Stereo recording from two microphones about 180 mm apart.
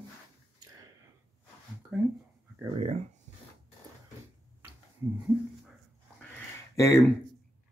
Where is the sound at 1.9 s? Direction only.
10° right (ahead or behind).